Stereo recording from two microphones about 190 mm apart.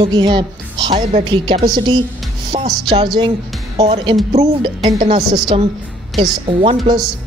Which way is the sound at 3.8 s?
30° right (ahead or behind).